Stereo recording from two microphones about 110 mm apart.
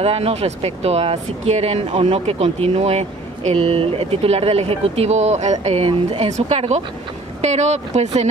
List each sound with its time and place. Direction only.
0.0 s speech: 65° right (ahead or behind)
2.0 s speech: 60° right (ahead or behind); by 6.8 s 80° right
7.4 s speech: 90° right